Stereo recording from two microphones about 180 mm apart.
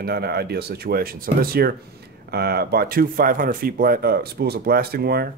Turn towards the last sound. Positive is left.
turn(degrees=-60)  # may be behind; listen again after turning